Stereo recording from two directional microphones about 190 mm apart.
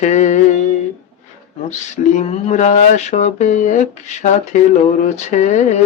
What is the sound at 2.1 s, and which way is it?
Speech, 35° left (ahead or behind).